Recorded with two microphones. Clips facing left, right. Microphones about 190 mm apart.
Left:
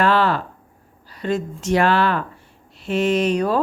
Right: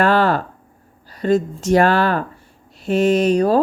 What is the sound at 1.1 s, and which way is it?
Speech, 40° right (ahead or behind).